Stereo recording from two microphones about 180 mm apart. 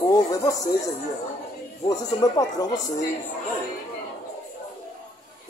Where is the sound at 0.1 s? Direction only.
20° left (ahead or behind).